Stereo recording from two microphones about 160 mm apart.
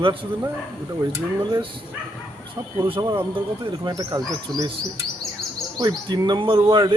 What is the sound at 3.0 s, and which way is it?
Speech, 20° right (ahead or behind).